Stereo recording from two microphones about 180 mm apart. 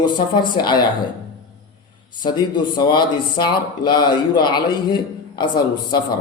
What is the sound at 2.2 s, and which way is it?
Speech, 25° left (ahead or behind).